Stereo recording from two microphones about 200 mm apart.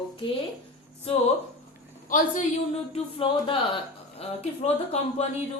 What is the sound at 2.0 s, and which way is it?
Speech, 40° left (ahead or behind).